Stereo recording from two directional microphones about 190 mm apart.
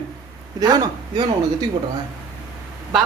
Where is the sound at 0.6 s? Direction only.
20° right (ahead or behind).